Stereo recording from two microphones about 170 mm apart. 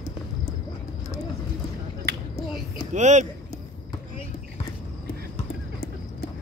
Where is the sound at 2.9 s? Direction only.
45° right (ahead or behind).